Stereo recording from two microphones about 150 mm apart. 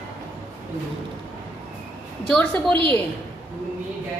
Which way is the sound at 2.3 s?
5° left (ahead or behind).